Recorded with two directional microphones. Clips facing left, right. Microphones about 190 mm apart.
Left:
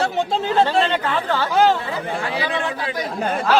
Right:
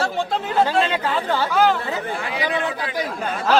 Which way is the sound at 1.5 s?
25° left (ahead or behind).